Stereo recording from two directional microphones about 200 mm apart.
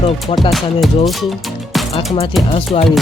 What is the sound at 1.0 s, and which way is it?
Music, centre (ahead or behind).